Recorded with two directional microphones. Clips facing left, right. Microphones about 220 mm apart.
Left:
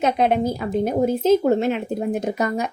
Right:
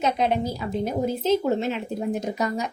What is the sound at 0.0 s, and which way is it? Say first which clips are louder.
Speech: left 4 dB; 55° left (ahead or behind).